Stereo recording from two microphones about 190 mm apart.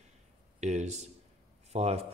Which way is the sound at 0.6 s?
35° right (ahead or behind).